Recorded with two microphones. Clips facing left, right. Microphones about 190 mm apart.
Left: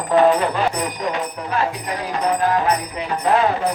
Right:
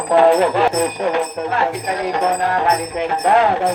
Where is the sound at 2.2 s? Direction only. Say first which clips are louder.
Even; 65° right (ahead or behind).